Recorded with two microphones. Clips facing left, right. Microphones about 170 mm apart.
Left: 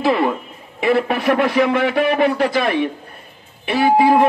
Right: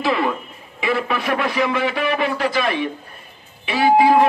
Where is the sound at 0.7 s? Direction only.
55° left (ahead or behind).